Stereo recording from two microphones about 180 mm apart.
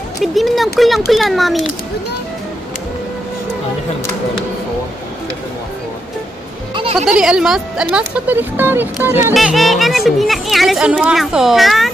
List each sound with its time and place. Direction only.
0.2 s speech: centre (ahead or behind)
6.7 s music: 30° right (ahead or behind)
7.1 s speech: 5° right (ahead or behind)
9.3 s speech: centre (ahead or behind)